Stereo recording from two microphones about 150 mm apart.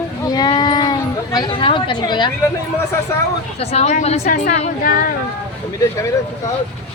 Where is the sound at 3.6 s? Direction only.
45° left (ahead or behind).